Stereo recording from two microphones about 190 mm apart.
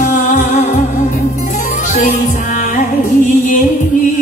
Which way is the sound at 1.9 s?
40° left (ahead or behind).